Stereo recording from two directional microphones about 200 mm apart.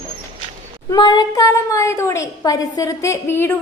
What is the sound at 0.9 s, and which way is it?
A woman's voice, 20° left (ahead or behind).